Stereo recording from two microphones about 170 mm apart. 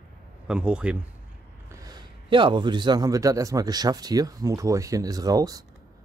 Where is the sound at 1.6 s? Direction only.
20° right (ahead or behind).